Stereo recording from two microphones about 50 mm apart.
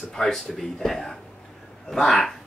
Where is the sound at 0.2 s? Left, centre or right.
Centre.